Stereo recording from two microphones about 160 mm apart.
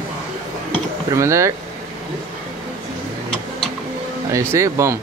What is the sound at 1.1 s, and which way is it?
Speech, 20° right (ahead or behind).